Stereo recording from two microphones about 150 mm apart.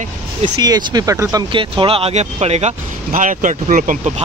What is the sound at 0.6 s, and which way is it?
Speech, 25° right (ahead or behind).